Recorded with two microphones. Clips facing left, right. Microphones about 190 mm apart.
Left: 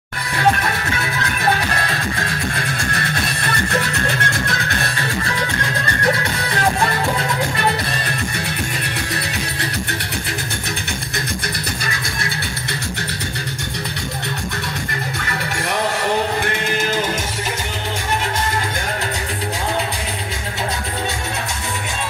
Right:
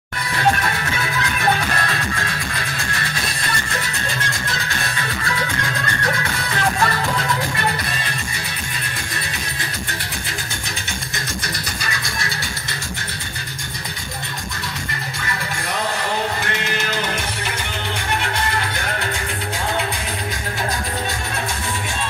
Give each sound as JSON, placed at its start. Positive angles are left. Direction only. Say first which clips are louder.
{"t": 3.8, "sound": "music", "louder": "left 5 dB", "side_deg": 60}